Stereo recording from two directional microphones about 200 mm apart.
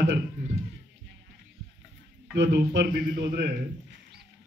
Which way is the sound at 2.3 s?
65° right (ahead or behind).